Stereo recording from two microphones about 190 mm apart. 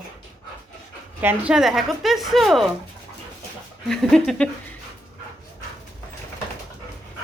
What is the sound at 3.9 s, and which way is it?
Speech, 5° left (ahead or behind).